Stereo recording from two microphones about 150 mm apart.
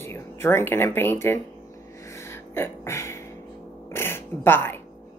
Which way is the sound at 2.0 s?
20° left (ahead or behind).